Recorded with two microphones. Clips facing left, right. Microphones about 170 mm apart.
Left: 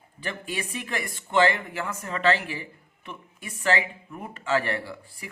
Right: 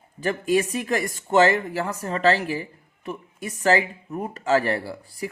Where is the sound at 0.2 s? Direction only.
40° right (ahead or behind).